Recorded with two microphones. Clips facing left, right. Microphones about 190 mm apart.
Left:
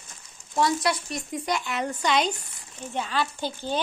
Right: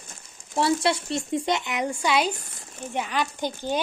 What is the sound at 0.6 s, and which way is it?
A woman's voice, 30° right (ahead or behind).